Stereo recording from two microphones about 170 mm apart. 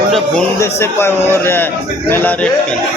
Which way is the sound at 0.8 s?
15° left (ahead or behind).